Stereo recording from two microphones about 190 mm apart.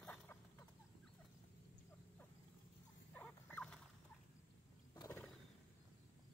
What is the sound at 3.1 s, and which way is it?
Rodents, 10° left (ahead or behind).